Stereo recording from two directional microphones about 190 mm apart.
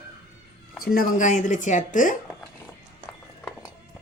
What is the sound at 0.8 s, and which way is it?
Speech, 50° left (ahead or behind).